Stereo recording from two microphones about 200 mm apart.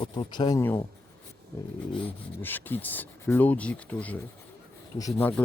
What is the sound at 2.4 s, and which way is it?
Speech, 10° left (ahead or behind).